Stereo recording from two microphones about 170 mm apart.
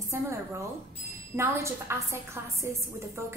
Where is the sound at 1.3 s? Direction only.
15° right (ahead or behind).